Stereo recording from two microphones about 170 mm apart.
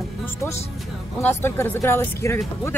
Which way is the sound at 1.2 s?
15° left (ahead or behind).